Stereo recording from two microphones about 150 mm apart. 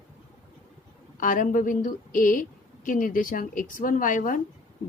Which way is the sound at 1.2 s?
60° left (ahead or behind).